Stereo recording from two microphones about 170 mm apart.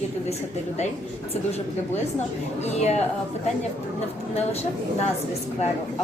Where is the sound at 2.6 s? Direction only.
40° left (ahead or behind).